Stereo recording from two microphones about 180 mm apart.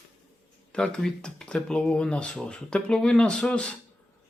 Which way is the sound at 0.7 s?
5° left (ahead or behind).